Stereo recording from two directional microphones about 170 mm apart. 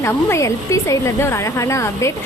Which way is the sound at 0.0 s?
15° left (ahead or behind).